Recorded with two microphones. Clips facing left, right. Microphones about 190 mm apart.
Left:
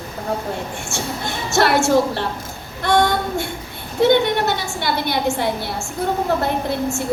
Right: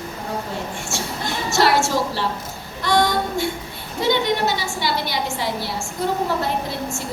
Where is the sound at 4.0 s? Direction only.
55° left (ahead or behind).